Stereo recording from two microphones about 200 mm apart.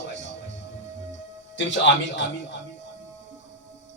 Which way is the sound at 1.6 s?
60° left (ahead or behind).